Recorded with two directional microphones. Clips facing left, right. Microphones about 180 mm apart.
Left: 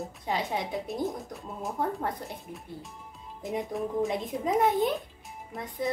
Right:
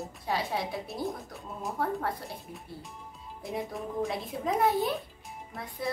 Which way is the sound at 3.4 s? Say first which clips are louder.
Left 4 dB; 20° left (ahead or behind).